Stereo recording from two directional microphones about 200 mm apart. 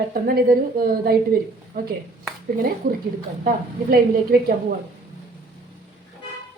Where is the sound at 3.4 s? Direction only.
50° right (ahead or behind).